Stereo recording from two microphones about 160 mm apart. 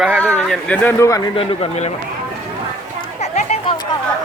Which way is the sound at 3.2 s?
40° left (ahead or behind).